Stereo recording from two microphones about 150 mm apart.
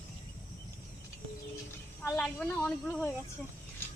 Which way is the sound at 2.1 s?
5° left (ahead or behind).